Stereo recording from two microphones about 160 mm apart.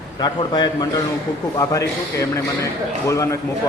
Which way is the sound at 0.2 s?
25° left (ahead or behind).